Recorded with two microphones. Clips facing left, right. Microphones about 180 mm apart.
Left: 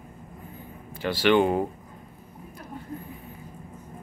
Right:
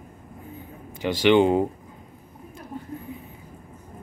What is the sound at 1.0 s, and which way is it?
Speech, 20° right (ahead or behind).